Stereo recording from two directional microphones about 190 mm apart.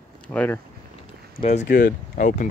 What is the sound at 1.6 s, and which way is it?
Speech, 50° left (ahead or behind).